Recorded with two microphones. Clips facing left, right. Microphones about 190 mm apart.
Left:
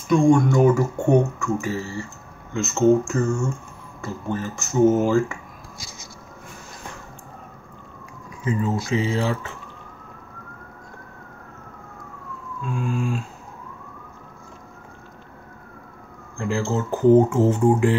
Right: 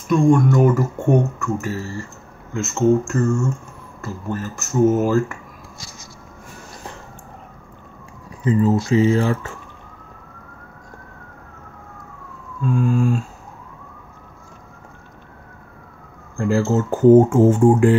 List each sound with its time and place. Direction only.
0.1 s speech: centre (ahead or behind)
8.5 s speech: 40° right (ahead or behind)
16.3 s speech: 45° right (ahead or behind)